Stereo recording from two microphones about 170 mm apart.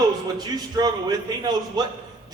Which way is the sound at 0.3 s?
25° right (ahead or behind).